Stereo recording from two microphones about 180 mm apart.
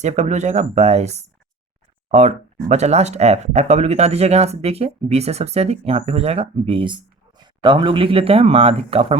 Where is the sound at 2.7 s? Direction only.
40° right (ahead or behind).